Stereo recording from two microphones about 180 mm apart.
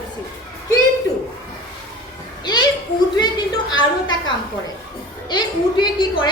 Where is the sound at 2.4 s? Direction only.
25° left (ahead or behind).